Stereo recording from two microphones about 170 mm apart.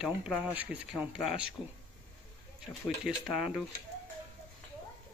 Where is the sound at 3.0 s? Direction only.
5° right (ahead or behind).